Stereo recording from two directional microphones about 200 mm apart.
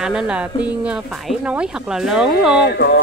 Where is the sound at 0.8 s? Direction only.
5° right (ahead or behind).